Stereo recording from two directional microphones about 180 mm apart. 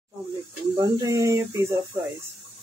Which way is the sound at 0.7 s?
20° right (ahead or behind).